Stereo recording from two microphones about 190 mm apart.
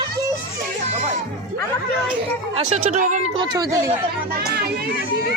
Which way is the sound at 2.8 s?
40° right (ahead or behind).